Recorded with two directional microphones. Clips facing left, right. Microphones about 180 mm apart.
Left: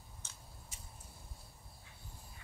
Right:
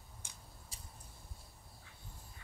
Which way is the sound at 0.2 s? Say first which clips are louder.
Right 1 dB; 15° right (ahead or behind).